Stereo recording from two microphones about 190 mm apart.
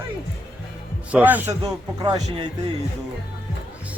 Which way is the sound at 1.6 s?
20° right (ahead or behind).